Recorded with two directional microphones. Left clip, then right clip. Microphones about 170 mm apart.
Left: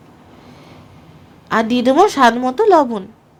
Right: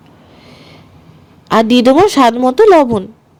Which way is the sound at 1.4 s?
35° right (ahead or behind).